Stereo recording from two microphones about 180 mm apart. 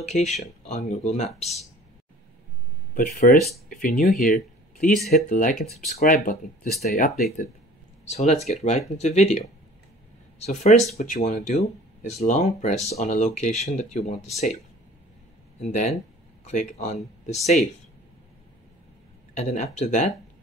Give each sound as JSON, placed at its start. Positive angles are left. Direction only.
{"t": 0.0, "sound": "speech", "side_deg": 40}
{"t": 2.9, "sound": "speech", "side_deg": 55}
{"t": 6.8, "sound": "speech", "side_deg": 0}
{"t": 8.1, "sound": "speech", "side_deg": 40}
{"t": 10.4, "sound": "speech", "side_deg": 40}
{"t": 15.6, "sound": "speech", "side_deg": 40}
{"t": 19.3, "sound": "speech", "side_deg": 40}